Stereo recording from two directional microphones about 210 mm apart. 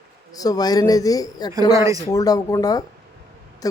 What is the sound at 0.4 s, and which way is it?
Speech, 20° left (ahead or behind).